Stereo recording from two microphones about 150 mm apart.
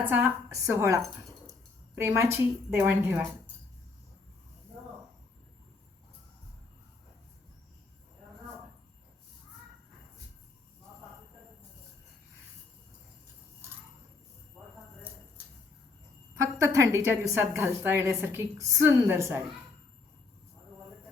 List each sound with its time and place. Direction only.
0.1 s a woman's voice: 10° right (ahead or behind)
16.6 s a woman's voice: 20° right (ahead or behind)